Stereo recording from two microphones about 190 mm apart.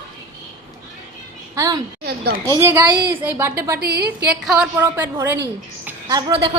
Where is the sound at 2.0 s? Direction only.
55° right (ahead or behind).